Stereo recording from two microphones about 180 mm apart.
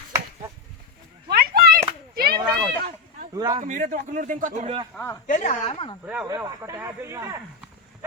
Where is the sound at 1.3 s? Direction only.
55° right (ahead or behind).